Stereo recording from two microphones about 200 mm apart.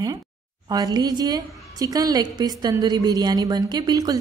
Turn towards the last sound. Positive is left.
turn(degrees=-20)  # may be behind; listen again after turning